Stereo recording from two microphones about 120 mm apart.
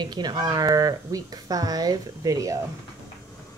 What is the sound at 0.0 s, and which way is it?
Speech, 35° right (ahead or behind).